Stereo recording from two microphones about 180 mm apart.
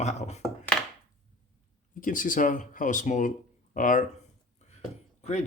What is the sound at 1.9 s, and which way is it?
Speech, 50° left (ahead or behind).